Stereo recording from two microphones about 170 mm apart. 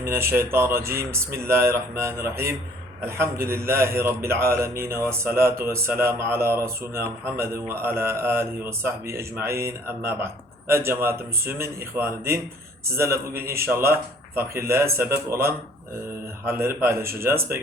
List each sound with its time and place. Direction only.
0.0 s a man's voice: 15° right (ahead or behind)